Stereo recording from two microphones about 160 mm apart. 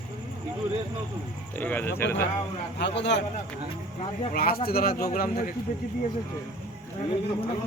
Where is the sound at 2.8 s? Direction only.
90° left.